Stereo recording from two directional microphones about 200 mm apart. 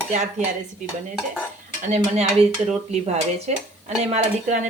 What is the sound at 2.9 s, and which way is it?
Speech, 35° right (ahead or behind).